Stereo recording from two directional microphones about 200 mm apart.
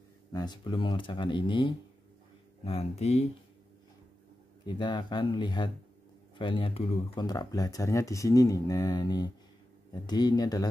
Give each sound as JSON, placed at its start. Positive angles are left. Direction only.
{"t": 0.3, "sound": "speech", "side_deg": 20}
{"t": 4.6, "sound": "speech", "side_deg": 25}
{"t": 7.2, "sound": "speech", "side_deg": 20}